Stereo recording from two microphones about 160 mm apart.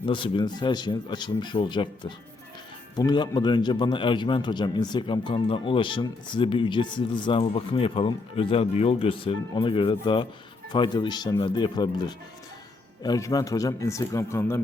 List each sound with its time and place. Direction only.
0.0 s a man's voice: 30° left (ahead or behind); by 14.6 s 15° left (ahead or behind)